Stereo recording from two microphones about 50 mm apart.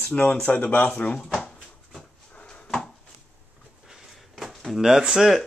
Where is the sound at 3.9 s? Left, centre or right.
Centre.